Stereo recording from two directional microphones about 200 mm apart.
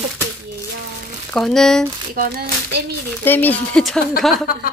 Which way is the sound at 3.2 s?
10° left (ahead or behind).